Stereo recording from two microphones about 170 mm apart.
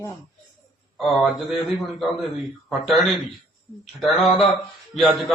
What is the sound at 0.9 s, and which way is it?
Speech, centre (ahead or behind).